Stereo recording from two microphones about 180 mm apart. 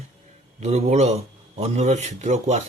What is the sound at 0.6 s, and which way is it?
A man's voice, 35° right (ahead or behind).